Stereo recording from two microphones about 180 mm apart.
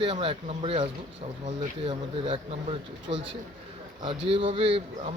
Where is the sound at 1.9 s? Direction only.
30° right (ahead or behind).